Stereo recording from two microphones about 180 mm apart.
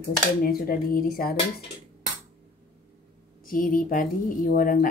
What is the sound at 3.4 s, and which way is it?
Speech, 50° left (ahead or behind).